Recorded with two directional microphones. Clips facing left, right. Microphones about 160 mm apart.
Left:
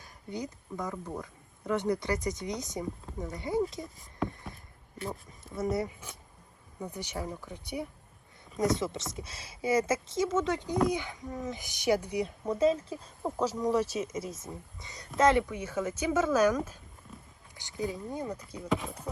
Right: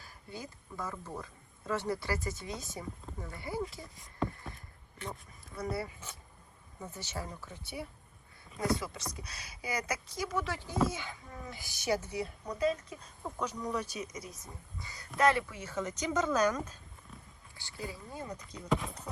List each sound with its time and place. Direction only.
0.0 s speech: 20° left (ahead or behind)
3.8 s speech: centre (ahead or behind)
5.4 s speech: 20° left (ahead or behind)
17.1 s a sound: 5° left (ahead or behind)
17.5 s speech: 20° left (ahead or behind)
18.3 s speech: 10° left (ahead or behind)